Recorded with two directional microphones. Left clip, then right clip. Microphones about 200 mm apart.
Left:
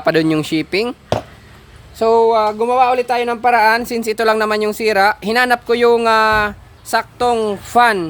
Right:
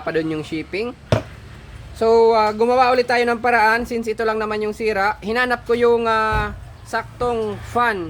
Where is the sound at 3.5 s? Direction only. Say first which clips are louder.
Left 6 dB; 35° left (ahead or behind).